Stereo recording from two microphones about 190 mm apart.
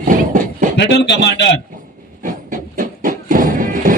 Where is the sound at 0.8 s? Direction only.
65° left (ahead or behind).